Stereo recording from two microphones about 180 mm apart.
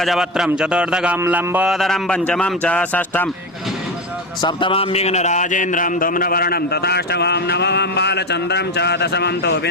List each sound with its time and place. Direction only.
0.0 s a man's voice: centre (ahead or behind)
4.4 s a man's voice: 25° left (ahead or behind); by 9.6 s 65° left (ahead or behind)